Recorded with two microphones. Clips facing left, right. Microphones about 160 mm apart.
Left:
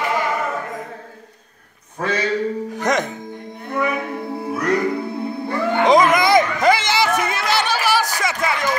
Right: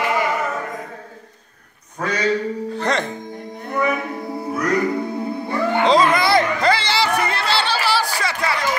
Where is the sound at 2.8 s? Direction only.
15° left (ahead or behind).